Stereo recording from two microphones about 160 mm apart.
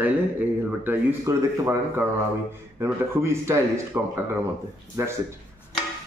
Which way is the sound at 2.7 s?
15° right (ahead or behind).